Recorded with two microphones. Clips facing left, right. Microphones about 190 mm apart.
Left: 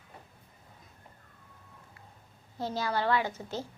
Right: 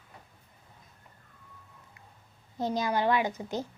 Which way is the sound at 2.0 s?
20° right (ahead or behind).